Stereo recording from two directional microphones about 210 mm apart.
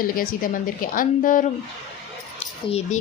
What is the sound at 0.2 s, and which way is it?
Speech, 40° left (ahead or behind).